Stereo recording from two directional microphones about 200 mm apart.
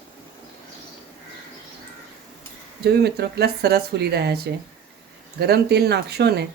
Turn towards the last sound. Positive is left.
turn(degrees=-55)  # may be behind; listen again after turning